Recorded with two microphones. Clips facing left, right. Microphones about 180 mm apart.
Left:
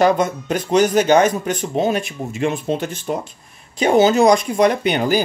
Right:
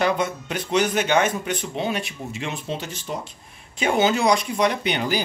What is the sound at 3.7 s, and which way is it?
Speech, 40° left (ahead or behind).